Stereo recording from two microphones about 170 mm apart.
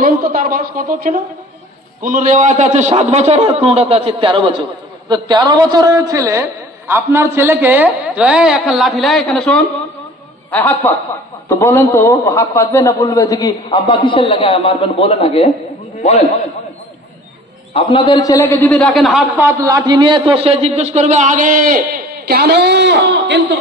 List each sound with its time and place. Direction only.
0.0 s a man's voice: 55° right (ahead or behind); by 16.3 s 40° left (ahead or behind)
17.7 s a man's voice: 30° left (ahead or behind); by 19.5 s 10° right (ahead or behind)
19.6 s a man's voice: 25° right (ahead or behind); by 23.4 s 90° right